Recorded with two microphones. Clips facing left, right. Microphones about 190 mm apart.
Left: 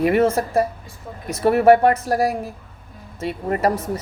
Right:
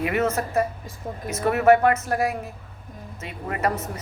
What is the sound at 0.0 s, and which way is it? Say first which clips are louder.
A woman's voice: left 6 dB; 35° left (ahead or behind).